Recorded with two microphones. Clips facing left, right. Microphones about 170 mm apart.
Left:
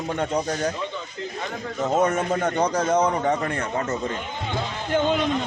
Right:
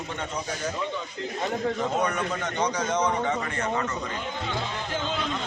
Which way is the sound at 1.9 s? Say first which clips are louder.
Left 6 dB; 45° left (ahead or behind).